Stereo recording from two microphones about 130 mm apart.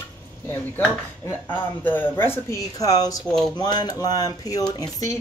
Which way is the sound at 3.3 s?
5° left (ahead or behind).